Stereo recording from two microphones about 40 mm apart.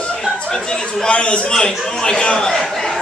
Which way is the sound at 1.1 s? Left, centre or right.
Left.